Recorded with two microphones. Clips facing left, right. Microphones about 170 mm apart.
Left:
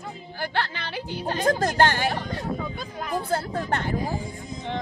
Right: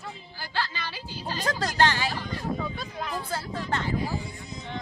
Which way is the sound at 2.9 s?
5° left (ahead or behind).